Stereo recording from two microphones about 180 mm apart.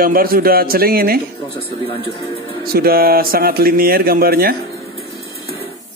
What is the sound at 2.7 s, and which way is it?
Speech, 55° right (ahead or behind).